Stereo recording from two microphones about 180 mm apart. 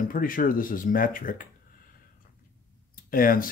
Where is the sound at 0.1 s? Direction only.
50° left (ahead or behind).